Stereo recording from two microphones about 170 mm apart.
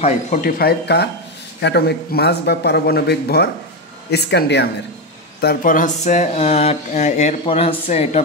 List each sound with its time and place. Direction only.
0.0 s speech: 50° left (ahead or behind); by 4.6 s 80° left
5.4 s speech: 60° left (ahead or behind); by 8.2 s 40° left (ahead or behind)